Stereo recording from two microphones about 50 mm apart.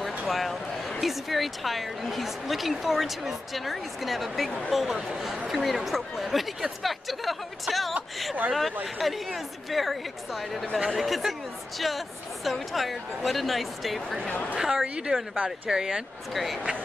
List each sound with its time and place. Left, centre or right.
0.3 s a sound: centre
1.0 s a woman's voice: centre
14.2 s a woman's voice: left
14.6 s a woman's voice: centre
15.3 s speech: right
15.7 s a woman's voice: centre